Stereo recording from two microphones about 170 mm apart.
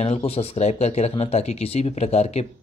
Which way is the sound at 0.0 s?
35° left (ahead or behind).